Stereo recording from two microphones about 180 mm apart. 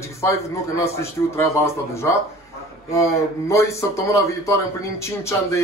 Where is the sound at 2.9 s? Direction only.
15° left (ahead or behind).